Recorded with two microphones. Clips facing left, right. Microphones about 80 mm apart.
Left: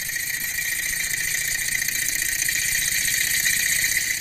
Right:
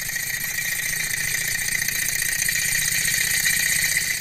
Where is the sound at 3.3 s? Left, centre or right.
Right.